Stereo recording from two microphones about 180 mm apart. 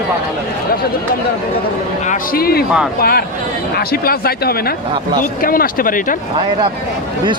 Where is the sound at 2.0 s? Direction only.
50° left (ahead or behind).